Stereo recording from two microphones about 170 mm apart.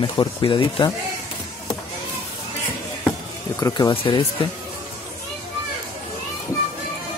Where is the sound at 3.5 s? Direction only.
20° left (ahead or behind).